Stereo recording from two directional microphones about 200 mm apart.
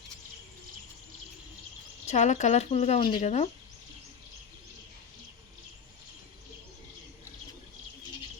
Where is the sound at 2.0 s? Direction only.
35° left (ahead or behind).